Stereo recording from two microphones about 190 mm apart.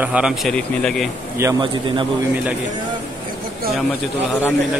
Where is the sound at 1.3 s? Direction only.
20° right (ahead or behind).